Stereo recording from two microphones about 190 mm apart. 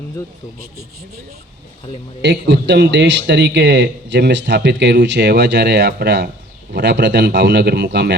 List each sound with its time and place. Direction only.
2.2 s a man's voice: 65° right (ahead or behind)